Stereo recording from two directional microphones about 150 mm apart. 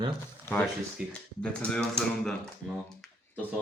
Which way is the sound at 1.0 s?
5° right (ahead or behind).